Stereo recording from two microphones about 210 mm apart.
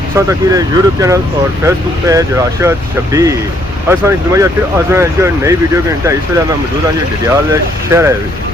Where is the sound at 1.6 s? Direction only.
15° right (ahead or behind).